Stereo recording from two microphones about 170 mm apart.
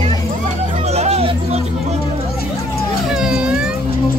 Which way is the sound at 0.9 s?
40° right (ahead or behind).